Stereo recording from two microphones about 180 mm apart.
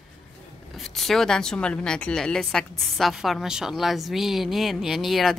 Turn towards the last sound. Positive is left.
turn(degrees=0)  # may be behind; listen again after turning